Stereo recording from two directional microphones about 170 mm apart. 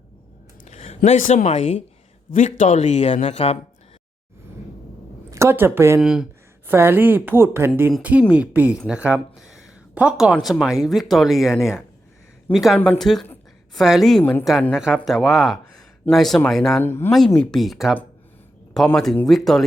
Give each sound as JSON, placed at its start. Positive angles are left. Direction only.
{"t": 0.6, "sound": "speech", "side_deg": 40}
{"t": 5.3, "sound": "a woman's voice", "side_deg": -15}
{"t": 6.0, "sound": "a woman's voice", "side_deg": -5}
{"t": 14.7, "sound": "speech", "side_deg": -5}
{"t": 16.8, "sound": "speech", "side_deg": 15}
{"t": 17.1, "sound": "speech", "side_deg": 5}
{"t": 18.9, "sound": "speech", "side_deg": 5}